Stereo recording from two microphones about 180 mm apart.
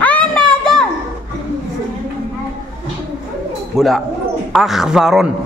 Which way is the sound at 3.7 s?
Centre (ahead or behind).